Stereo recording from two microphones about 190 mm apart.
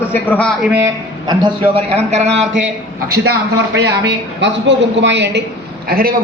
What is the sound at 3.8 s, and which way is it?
A woman's voice, 60° right (ahead or behind).